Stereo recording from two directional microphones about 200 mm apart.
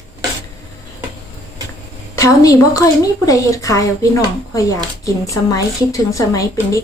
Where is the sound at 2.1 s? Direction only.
15° left (ahead or behind).